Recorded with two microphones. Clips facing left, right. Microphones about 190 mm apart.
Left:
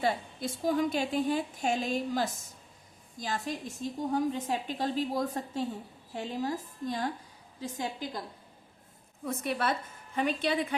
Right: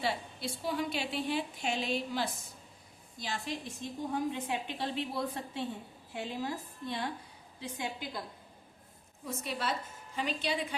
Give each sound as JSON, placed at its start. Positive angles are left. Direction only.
{"t": 0.0, "sound": "a woman's voice", "side_deg": 45}
{"t": 9.2, "sound": "a woman's voice", "side_deg": 55}